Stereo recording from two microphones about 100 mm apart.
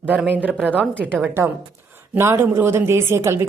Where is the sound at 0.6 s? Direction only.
15° left (ahead or behind).